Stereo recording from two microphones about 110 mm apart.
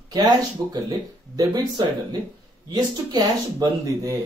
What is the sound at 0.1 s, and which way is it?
Speech, 35° right (ahead or behind).